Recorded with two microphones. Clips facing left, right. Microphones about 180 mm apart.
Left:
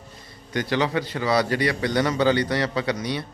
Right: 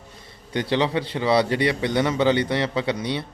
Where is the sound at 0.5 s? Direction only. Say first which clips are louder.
Right 1 dB; 25° right (ahead or behind).